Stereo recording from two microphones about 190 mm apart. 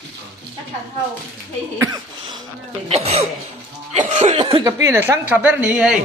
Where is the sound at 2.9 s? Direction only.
35° right (ahead or behind).